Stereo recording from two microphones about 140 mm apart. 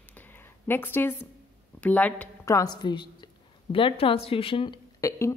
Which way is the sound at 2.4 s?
25° left (ahead or behind).